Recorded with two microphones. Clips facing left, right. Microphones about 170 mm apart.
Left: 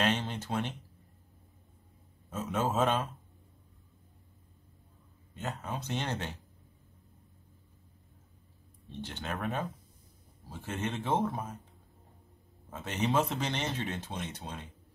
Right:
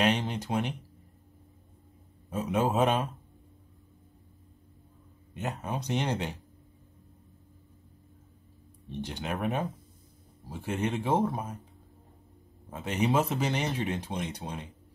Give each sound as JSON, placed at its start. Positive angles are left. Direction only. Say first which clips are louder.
{"t": 0.0, "sound": "speech", "louder": "right 4 dB", "side_deg": -15}
{"t": 2.2, "sound": "speech", "louder": "right 4 dB", "side_deg": -15}
{"t": 5.6, "sound": "speech", "louder": "right 6 dB", "side_deg": -20}
{"t": 8.8, "sound": "speech", "louder": "right 4 dB", "side_deg": -15}
{"t": 12.7, "sound": "speech", "louder": "right 3 dB", "side_deg": -10}